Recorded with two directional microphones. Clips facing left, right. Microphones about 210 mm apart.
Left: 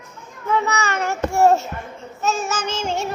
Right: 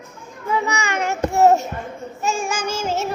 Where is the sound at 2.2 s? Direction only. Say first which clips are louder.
Even; 10° right (ahead or behind).